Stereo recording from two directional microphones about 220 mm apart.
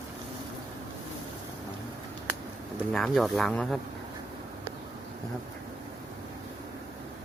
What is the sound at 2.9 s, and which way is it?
Speech, centre (ahead or behind).